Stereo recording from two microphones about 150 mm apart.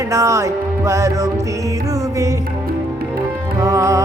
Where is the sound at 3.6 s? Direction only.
20° right (ahead or behind).